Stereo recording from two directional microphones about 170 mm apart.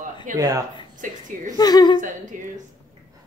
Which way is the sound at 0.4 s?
20° right (ahead or behind).